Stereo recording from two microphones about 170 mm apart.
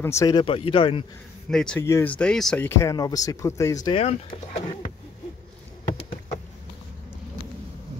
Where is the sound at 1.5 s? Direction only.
5° left (ahead or behind).